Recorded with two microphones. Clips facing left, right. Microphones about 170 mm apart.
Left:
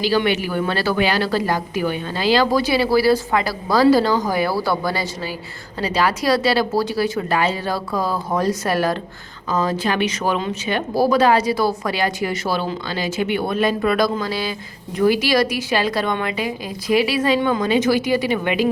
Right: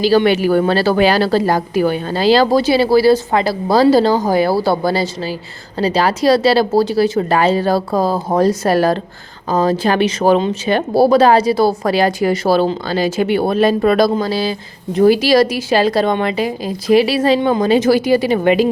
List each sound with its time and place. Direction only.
0.0 s a woman's voice: 35° right (ahead or behind)